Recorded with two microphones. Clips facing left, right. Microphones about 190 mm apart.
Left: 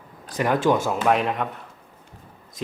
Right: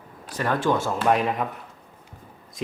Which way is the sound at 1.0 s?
Centre (ahead or behind).